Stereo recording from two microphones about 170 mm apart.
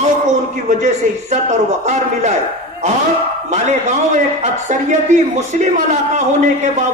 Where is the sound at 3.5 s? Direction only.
45° right (ahead or behind).